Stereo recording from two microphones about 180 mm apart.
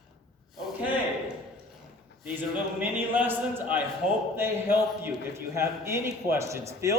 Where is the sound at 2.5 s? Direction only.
10° right (ahead or behind).